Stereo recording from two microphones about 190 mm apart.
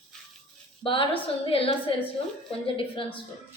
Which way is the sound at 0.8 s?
30° left (ahead or behind).